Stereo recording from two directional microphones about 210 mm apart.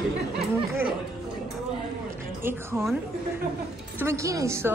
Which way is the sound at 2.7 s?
10° right (ahead or behind).